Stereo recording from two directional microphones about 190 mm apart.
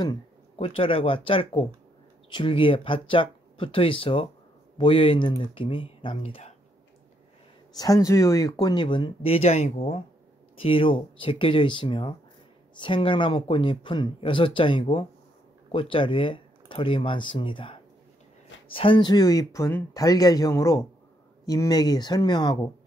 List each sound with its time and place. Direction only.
0.0 s speech: 25° left (ahead or behind)
7.7 s speech: 20° left (ahead or behind)